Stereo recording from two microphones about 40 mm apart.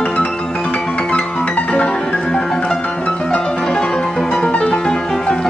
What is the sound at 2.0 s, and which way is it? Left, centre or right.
Music, left.